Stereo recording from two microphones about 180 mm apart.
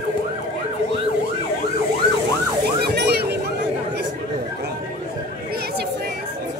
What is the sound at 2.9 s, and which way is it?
Music, 65° right (ahead or behind).